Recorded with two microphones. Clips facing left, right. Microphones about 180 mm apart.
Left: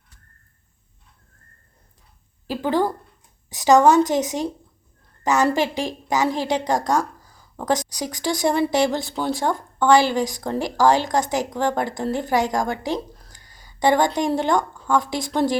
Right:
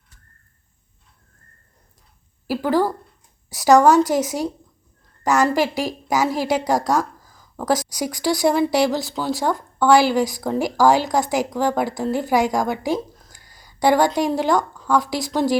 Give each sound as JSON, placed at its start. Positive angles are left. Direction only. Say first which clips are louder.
{"t": 2.5, "sound": "speech", "louder": "right 2 dB", "side_deg": -5}
{"t": 3.5, "sound": "a woman's voice", "louder": "right 1 dB", "side_deg": 15}
{"t": 5.6, "sound": "a woman's voice", "louder": "right 2 dB", "side_deg": -5}
{"t": 13.3, "sound": "a sound", "louder": "right 1 dB", "side_deg": -40}
{"t": 13.7, "sound": "a woman's voice", "louder": "right 2 dB", "side_deg": -5}